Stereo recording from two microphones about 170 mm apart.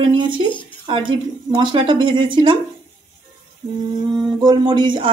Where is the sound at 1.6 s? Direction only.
30° right (ahead or behind).